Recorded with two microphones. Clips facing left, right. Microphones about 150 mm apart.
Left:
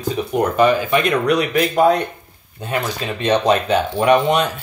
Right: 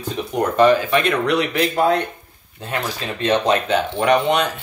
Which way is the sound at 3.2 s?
15° left (ahead or behind).